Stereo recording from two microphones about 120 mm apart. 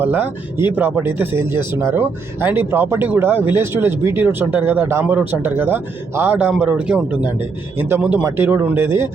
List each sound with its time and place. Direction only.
0.0 s speech: 15° right (ahead or behind)